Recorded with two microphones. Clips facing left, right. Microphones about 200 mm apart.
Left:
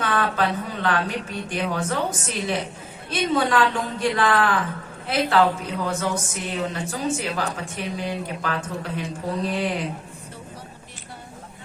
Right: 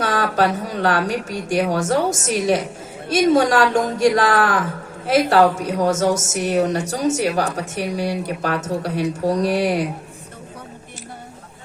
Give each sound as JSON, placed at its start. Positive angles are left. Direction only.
{"t": 0.0, "sound": "a sound", "side_deg": -40}
{"t": 0.3, "sound": "a woman's voice", "side_deg": -40}
{"t": 6.1, "sound": "a sound", "side_deg": -85}
{"t": 6.5, "sound": "a woman's voice", "side_deg": -40}
{"t": 7.7, "sound": "speech", "side_deg": -75}
{"t": 8.4, "sound": "a woman's voice", "side_deg": -40}